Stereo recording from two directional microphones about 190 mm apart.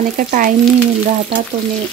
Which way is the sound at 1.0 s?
40° right (ahead or behind).